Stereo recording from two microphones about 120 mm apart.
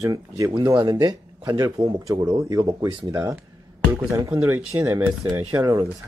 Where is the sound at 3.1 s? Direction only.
30° right (ahead or behind).